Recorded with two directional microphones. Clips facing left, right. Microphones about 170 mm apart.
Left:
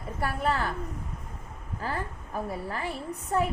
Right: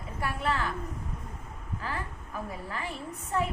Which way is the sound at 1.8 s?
40° left (ahead or behind).